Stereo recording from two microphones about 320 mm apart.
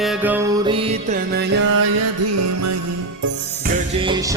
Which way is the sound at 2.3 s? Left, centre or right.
Right.